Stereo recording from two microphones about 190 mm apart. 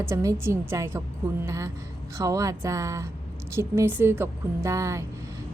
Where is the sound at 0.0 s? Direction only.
15° right (ahead or behind).